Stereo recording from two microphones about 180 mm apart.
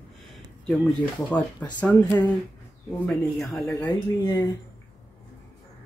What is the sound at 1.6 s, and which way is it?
Speech, 5° left (ahead or behind).